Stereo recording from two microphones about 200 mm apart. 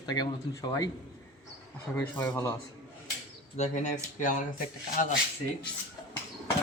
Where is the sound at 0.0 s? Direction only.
20° left (ahead or behind).